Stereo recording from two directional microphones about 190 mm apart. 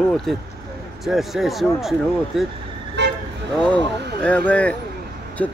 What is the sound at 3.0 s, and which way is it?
Vehicle, 65° right (ahead or behind).